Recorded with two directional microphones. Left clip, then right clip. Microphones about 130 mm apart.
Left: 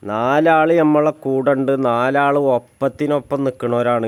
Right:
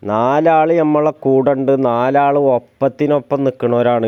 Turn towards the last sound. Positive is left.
turn(degrees=-30)  # may be behind; listen again after turning